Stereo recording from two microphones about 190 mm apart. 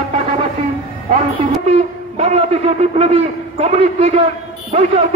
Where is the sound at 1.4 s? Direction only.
35° right (ahead or behind).